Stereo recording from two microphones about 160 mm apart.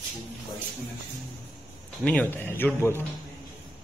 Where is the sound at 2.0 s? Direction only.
5° left (ahead or behind).